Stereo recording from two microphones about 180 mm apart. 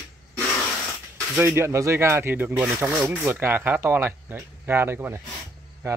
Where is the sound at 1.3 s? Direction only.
15° right (ahead or behind).